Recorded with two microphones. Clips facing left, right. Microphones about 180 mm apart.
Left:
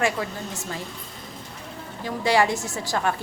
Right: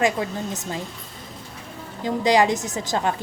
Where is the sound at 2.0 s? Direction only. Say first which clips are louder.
Right 3 dB; 20° right (ahead or behind).